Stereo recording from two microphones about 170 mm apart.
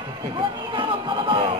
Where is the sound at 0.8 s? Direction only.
30° right (ahead or behind).